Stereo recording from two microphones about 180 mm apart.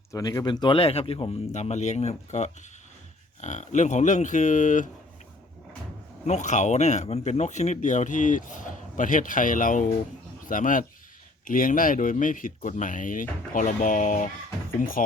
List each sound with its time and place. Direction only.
0.1 s speech: 20° left (ahead or behind); by 4.9 s 45° left (ahead or behind)
6.2 s speech: 40° left (ahead or behind)